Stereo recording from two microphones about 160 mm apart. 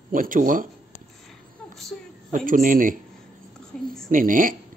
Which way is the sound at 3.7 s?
5° left (ahead or behind).